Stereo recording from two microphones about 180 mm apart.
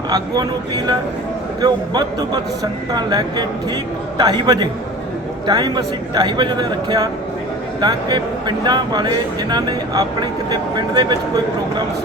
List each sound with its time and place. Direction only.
0.1 s speech: 25° right (ahead or behind)